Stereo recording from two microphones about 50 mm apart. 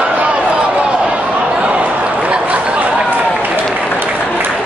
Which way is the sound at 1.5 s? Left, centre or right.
Right.